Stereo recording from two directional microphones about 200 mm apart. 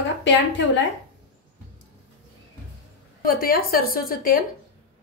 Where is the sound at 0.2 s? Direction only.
65° left (ahead or behind).